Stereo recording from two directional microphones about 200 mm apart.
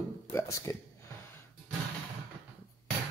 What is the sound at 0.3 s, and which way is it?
Speech, 15° left (ahead or behind).